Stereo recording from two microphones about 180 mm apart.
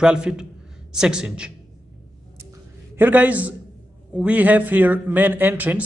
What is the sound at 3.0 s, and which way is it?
A man's voice, 10° right (ahead or behind).